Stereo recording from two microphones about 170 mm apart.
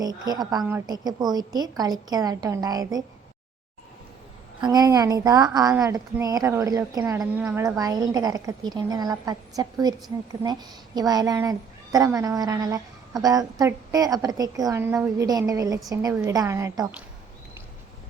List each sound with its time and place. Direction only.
0.0 s a woman's voice: 20° right (ahead or behind)
4.6 s a woman's voice: 20° right (ahead or behind)